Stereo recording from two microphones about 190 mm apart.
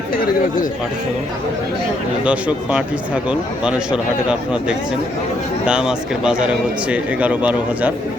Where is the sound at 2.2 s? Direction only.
5° right (ahead or behind).